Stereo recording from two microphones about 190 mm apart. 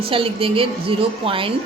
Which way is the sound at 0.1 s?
30° right (ahead or behind).